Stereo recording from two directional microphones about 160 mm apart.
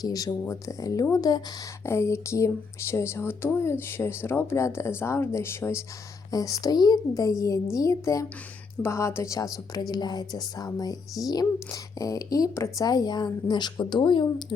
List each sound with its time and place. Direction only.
0.0 s speech: 20° left (ahead or behind)